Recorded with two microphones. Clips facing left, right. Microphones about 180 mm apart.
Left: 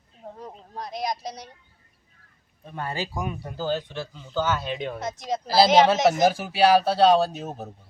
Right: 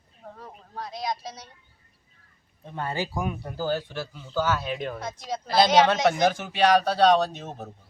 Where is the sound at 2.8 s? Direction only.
15° right (ahead or behind).